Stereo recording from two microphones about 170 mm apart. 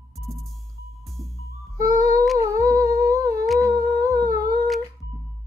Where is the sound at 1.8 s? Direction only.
20° right (ahead or behind).